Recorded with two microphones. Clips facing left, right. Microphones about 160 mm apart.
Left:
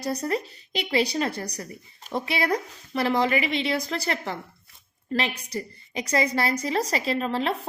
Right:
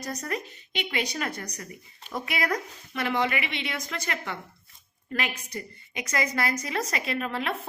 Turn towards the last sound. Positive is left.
turn(degrees=30)  # may be behind; listen again after turning